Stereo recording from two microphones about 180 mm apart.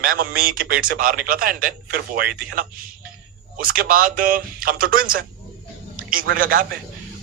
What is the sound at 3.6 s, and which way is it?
A man's voice, 50° right (ahead or behind).